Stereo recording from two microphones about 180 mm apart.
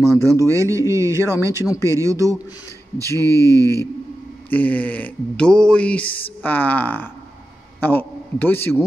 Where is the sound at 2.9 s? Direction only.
15° left (ahead or behind).